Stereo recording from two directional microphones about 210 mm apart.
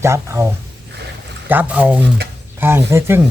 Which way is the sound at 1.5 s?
5° right (ahead or behind).